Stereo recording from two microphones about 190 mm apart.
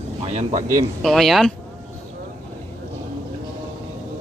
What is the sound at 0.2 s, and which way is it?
Speech, 35° right (ahead or behind).